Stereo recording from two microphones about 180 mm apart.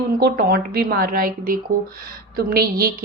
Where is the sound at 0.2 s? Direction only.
60° right (ahead or behind).